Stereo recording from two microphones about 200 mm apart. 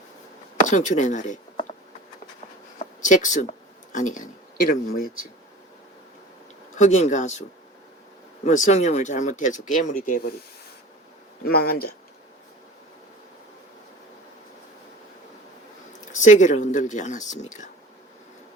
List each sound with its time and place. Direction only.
0.7 s speech: 35° left (ahead or behind)
2.7 s a sound: 40° left (ahead or behind)
4.1 s speech: 45° left (ahead or behind)
6.7 s speech: 35° left (ahead or behind)
8.4 s speech: 35° left (ahead or behind)
11.4 s speech: 50° left (ahead or behind)
16.1 s speech: 40° left (ahead or behind)